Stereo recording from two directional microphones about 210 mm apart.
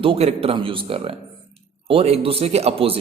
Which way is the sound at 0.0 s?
25° right (ahead or behind).